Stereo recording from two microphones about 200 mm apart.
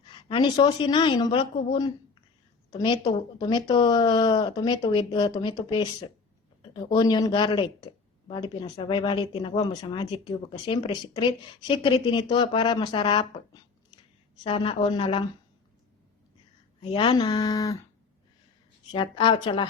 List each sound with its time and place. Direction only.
0.1 s speech: 25° left (ahead or behind)
16.8 s speech: 25° left (ahead or behind)
18.9 s speech: 25° left (ahead or behind)